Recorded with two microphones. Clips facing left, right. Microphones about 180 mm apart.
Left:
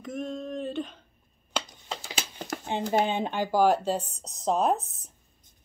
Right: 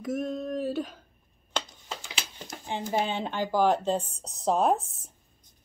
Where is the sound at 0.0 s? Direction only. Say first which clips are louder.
Right 3 dB; 5° right (ahead or behind).